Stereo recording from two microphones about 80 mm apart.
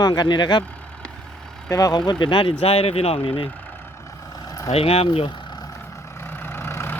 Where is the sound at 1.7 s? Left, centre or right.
Left.